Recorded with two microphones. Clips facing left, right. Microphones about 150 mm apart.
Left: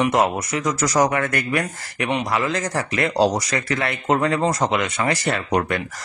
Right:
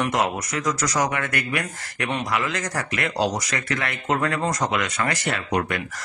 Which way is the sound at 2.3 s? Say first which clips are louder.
Left 4 dB; 30° left (ahead or behind).